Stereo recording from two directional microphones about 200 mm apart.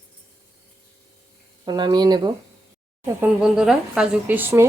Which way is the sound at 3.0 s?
5° right (ahead or behind).